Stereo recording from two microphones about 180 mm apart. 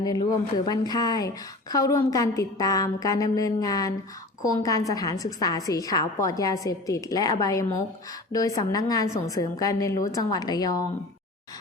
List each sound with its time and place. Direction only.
0.0 s a woman's voice: 20° left (ahead or behind)